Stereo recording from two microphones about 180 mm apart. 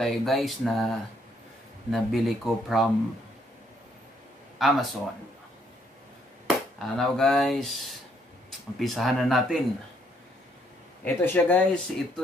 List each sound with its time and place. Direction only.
0.0 s speech: centre (ahead or behind)
4.6 s speech: centre (ahead or behind)
6.4 s speech: centre (ahead or behind)
11.1 s speech: 10° left (ahead or behind)